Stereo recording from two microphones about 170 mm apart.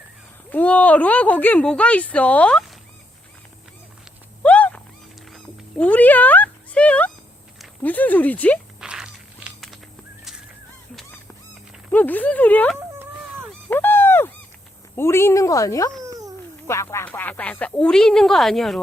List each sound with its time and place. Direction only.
0.5 s speech: 10° left (ahead or behind)
4.4 s wild animals: 5° left (ahead or behind)
5.3 s cat: centre (ahead or behind)
7.6 s speech: 10° left (ahead or behind)
8.8 s a sound: 5° right (ahead or behind)
11.9 s speech: 10° left (ahead or behind)
13.7 s a sound: 10° left (ahead or behind)
14.9 s speech: 15° left (ahead or behind)
16.0 s a sound: 20° right (ahead or behind)
16.6 s speech: 15° left (ahead or behind)